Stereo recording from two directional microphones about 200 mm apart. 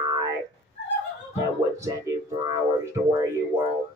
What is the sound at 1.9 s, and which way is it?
Speech, 15° right (ahead or behind).